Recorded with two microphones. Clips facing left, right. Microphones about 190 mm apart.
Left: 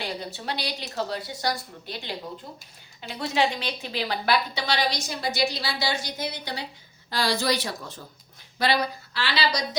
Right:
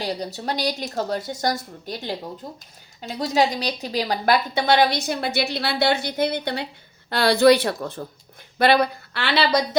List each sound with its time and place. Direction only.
0.0 s a woman's voice: 40° right (ahead or behind); by 9.6 s 55° right (ahead or behind)